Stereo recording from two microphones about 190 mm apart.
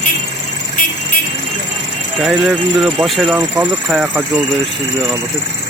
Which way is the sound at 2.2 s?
Centre (ahead or behind).